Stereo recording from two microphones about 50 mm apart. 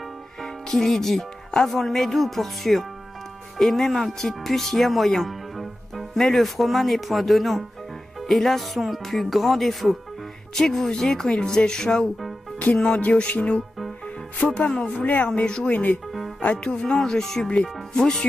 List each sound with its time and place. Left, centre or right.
0.4 s speech: centre
12.7 s music: left
14.6 s music: left
15.4 s speech: centre
15.7 s speech: left
16.5 s music: left
16.8 s speech: centre